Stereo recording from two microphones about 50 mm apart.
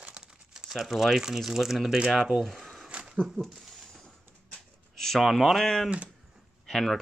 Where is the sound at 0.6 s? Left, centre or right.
Centre.